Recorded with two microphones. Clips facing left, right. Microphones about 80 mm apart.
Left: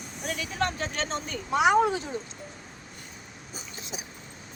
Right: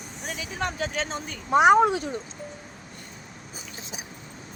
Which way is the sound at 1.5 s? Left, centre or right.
Right.